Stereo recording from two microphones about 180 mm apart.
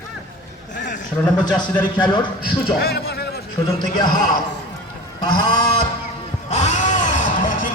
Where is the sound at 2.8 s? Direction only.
60° left (ahead or behind).